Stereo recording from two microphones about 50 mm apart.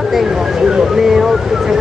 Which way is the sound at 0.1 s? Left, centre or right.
Centre.